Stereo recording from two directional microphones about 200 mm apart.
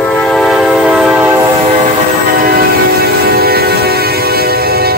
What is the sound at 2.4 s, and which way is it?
Train, 50° right (ahead or behind).